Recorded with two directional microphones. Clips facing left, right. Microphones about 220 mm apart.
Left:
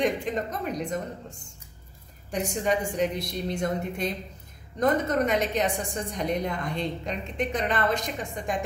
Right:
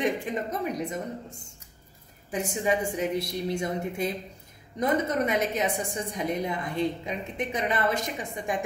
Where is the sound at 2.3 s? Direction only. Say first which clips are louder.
Even; 5° right (ahead or behind).